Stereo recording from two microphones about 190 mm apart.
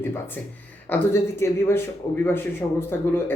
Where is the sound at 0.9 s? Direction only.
15° left (ahead or behind).